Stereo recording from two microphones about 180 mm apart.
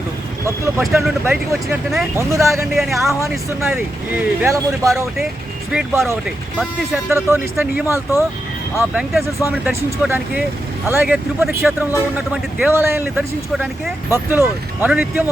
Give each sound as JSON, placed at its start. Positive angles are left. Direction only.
{"t": 0.8, "sound": "speech", "side_deg": 0}
{"t": 1.2, "sound": "speech", "side_deg": -10}
{"t": 2.1, "sound": "speech", "side_deg": -15}
{"t": 2.7, "sound": "speech", "side_deg": 0}
{"t": 7.9, "sound": "speech", "side_deg": 15}
{"t": 8.8, "sound": "speech", "side_deg": -5}